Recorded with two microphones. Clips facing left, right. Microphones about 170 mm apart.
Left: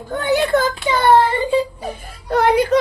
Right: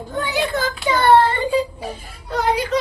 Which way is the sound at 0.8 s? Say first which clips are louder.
Left 1 dB; centre (ahead or behind).